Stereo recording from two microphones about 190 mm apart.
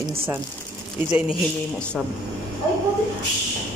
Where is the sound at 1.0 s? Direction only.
10° right (ahead or behind).